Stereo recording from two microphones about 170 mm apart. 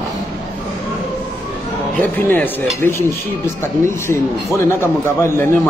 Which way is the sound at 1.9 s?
10° left (ahead or behind).